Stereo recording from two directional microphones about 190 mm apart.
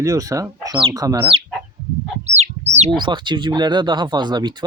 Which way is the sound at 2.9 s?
25° right (ahead or behind).